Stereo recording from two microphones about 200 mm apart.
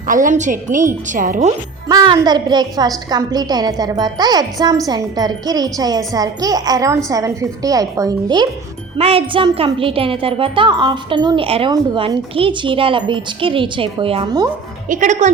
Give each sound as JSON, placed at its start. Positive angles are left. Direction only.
{"t": 0.1, "sound": "a woman's voice", "side_deg": -40}
{"t": 1.9, "sound": "speech", "side_deg": -20}
{"t": 14.8, "sound": "a woman's voice", "side_deg": -40}